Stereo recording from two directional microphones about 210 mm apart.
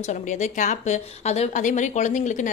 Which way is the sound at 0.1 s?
35° left (ahead or behind).